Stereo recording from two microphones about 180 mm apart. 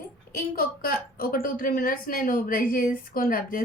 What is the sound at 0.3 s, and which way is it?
A woman's voice, 55° left (ahead or behind).